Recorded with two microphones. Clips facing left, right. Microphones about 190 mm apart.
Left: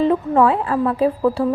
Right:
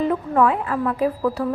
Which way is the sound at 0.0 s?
30° left (ahead or behind).